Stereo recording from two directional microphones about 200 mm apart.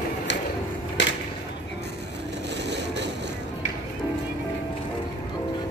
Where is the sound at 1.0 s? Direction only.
65° left (ahead or behind).